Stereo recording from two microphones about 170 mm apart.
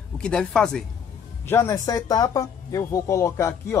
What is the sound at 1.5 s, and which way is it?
Speech, 15° left (ahead or behind).